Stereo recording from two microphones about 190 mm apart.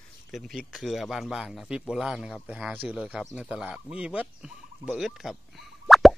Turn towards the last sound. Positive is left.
turn(degrees=0)  # may be behind; listen again after turning